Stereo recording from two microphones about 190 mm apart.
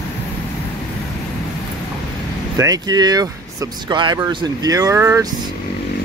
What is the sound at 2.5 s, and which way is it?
Speech, 20° right (ahead or behind).